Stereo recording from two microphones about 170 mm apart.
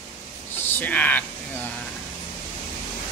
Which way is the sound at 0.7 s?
10° left (ahead or behind).